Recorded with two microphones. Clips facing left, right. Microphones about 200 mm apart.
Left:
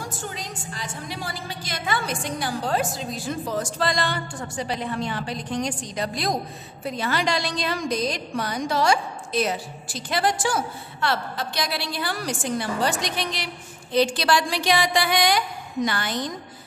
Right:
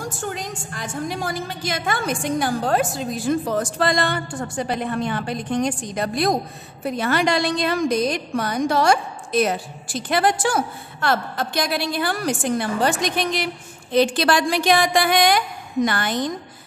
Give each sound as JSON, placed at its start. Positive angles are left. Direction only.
{"t": 0.0, "sound": "a woman's voice", "side_deg": -50}